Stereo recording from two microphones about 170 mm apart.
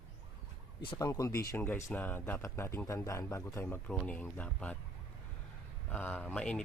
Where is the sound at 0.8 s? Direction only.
25° left (ahead or behind); by 4.8 s 10° left (ahead or behind).